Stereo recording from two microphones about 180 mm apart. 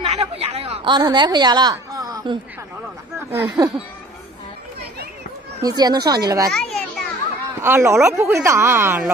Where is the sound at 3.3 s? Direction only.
15° right (ahead or behind).